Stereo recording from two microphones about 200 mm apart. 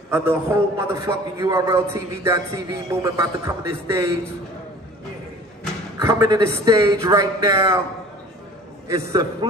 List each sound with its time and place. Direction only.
0.1 s a man's voice: 10° right (ahead or behind)
5.9 s a man's voice: 15° right (ahead or behind)
8.8 s a man's voice: 15° right (ahead or behind)